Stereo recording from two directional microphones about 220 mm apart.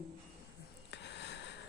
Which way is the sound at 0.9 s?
50° left (ahead or behind).